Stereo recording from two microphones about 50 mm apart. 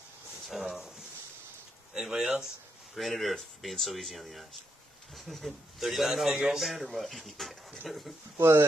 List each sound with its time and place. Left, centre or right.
0.5 s a sound: centre
2.0 s a man's voice: centre
8.4 s speech: right